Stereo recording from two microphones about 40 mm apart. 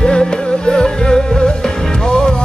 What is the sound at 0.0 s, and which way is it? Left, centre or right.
Music, centre.